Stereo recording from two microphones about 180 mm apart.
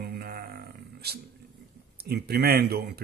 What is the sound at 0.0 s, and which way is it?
Music, 60° right (ahead or behind).